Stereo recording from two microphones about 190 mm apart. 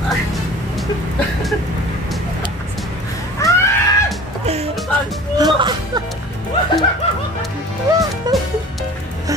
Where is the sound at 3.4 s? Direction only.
15° left (ahead or behind).